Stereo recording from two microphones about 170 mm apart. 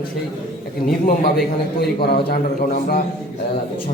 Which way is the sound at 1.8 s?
70° left (ahead or behind).